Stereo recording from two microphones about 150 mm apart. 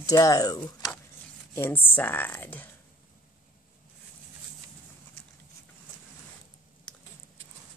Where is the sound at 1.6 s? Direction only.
15° left (ahead or behind).